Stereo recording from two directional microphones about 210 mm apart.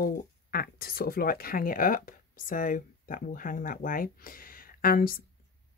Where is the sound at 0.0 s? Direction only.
45° left (ahead or behind).